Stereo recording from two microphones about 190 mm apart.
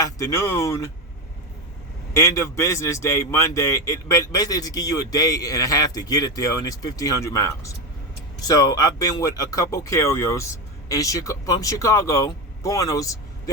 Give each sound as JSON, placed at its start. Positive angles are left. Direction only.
{"t": 0.0, "sound": "speech", "side_deg": 15}
{"t": 2.1, "sound": "a man's voice", "side_deg": 15}